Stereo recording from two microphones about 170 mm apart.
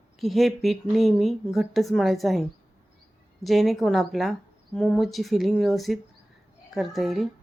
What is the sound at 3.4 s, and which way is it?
Speech, centre (ahead or behind).